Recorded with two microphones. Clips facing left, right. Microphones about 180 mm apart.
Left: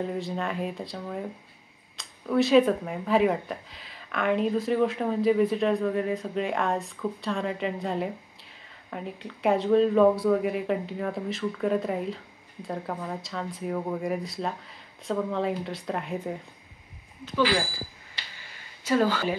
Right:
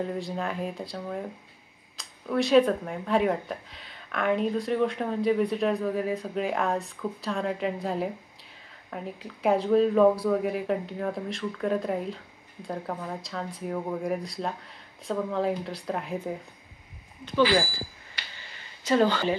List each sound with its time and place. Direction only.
0.0 s speech: centre (ahead or behind)
18.9 s speech: 5° left (ahead or behind)